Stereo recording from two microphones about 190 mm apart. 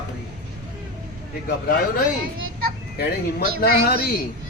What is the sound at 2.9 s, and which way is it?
Speech, 55° left (ahead or behind).